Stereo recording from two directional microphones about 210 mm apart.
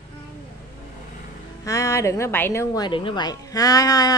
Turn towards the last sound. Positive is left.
turn(degrees=15)  # may be behind; listen again after turning